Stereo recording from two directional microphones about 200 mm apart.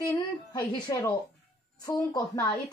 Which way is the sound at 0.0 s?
20° left (ahead or behind).